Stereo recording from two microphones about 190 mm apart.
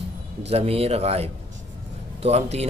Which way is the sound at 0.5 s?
30° right (ahead or behind).